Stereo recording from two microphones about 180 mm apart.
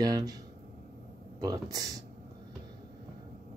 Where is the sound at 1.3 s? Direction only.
20° right (ahead or behind).